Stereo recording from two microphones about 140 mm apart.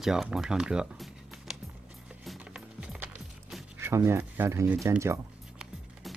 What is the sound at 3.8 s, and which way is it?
Speech, 20° right (ahead or behind).